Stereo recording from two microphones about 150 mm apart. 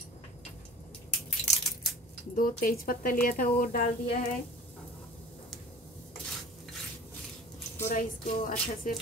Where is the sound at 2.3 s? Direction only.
70° left (ahead or behind).